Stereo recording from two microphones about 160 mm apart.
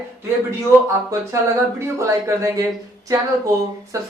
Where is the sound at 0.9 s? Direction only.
15° right (ahead or behind).